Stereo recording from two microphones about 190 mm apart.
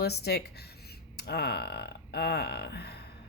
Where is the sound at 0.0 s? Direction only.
60° left (ahead or behind).